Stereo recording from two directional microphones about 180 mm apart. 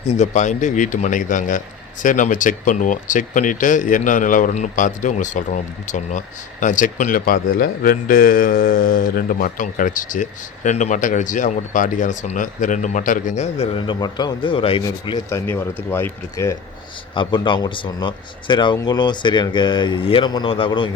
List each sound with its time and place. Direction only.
0.1 s speech: 40° left (ahead or behind); by 15.4 s 20° left (ahead or behind)
15.4 s speech: 10° left (ahead or behind)
17.2 s speech: 25° left (ahead or behind)